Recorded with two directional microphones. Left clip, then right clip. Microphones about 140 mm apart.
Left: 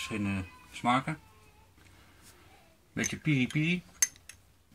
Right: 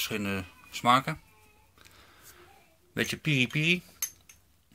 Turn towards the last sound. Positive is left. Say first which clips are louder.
# right 4 dB
turn(degrees=-25)  # may be behind; listen again after turning